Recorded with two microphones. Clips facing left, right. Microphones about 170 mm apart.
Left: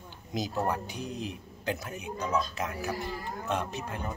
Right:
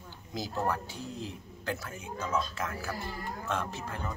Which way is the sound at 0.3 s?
20° left (ahead or behind).